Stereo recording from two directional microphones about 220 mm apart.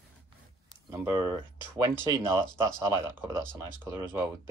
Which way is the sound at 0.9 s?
15° right (ahead or behind).